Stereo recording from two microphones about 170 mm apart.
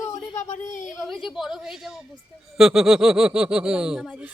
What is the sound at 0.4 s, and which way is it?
Speech, 45° left (ahead or behind).